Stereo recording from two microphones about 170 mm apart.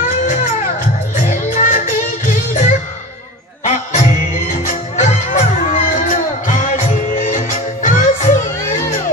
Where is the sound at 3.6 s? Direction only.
40° left (ahead or behind).